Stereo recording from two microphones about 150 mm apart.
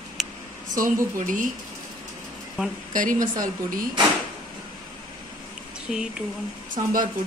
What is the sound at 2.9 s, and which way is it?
Speech, 65° right (ahead or behind).